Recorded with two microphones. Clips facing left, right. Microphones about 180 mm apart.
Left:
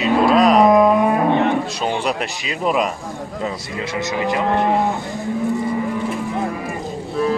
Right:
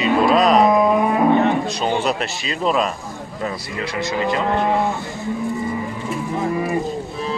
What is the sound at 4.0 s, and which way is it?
Speech, 15° left (ahead or behind).